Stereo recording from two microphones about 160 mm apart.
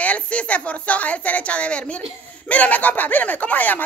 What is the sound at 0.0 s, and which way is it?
Speech, 10° left (ahead or behind).